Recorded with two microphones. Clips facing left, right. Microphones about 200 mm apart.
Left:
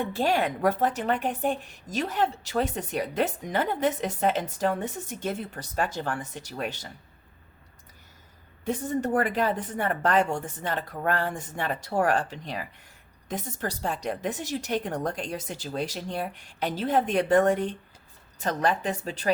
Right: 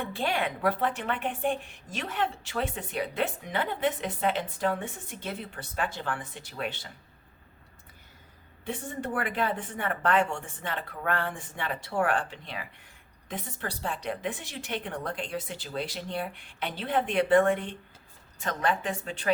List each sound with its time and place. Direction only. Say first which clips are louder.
0.1 s a woman's voice: left 5 dB; 40° left (ahead or behind)
8.6 s a woman's voice: left 7 dB; 40° left (ahead or behind)